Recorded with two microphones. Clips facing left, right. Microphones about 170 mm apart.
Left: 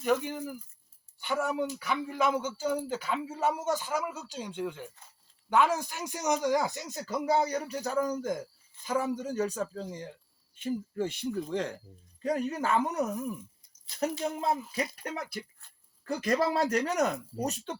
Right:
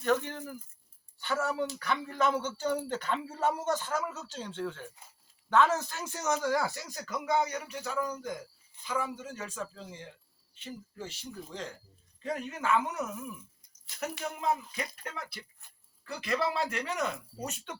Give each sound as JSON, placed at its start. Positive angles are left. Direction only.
{"t": 0.0, "sound": "speech", "side_deg": 10}
{"t": 10.5, "sound": "speech", "side_deg": 50}
{"t": 12.2, "sound": "speech", "side_deg": 40}
{"t": 16.0, "sound": "speech", "side_deg": 45}